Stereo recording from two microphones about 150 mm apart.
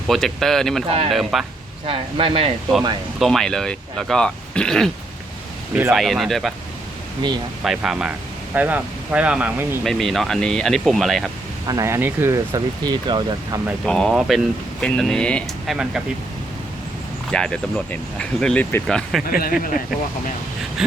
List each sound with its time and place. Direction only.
0.1 s speech: centre (ahead or behind)
0.9 s speech: 40° right (ahead or behind)
1.1 s speech: centre (ahead or behind)
1.9 s speech: 35° right (ahead or behind)
3.2 s speech: centre (ahead or behind)
5.7 s speech: 5° right (ahead or behind)
7.6 s speech: 5° right (ahead or behind)
9.8 s speech: centre (ahead or behind)
11.6 s speech: 25° right (ahead or behind)
13.8 s speech: 5° left (ahead or behind)
17.3 s speech: 5° left (ahead or behind)
19.3 s speech: 75° left (ahead or behind)